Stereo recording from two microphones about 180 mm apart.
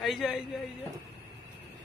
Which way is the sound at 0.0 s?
Centre (ahead or behind).